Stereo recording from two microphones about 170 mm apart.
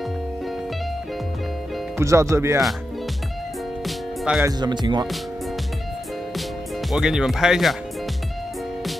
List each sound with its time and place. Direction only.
2.0 s speech: 15° right (ahead or behind)
3.8 s music: centre (ahead or behind)
4.5 s speech: 25° right (ahead or behind)
6.9 s speech: 5° right (ahead or behind)